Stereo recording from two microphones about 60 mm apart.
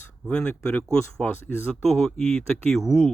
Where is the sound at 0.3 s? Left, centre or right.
Left.